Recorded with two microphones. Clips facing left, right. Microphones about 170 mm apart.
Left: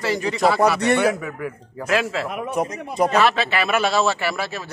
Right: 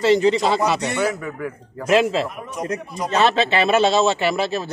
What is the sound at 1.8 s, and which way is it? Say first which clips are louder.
Speech: right 5 dB; 25° right (ahead or behind).